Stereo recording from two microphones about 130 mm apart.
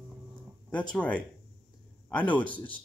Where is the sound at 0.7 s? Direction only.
10° left (ahead or behind).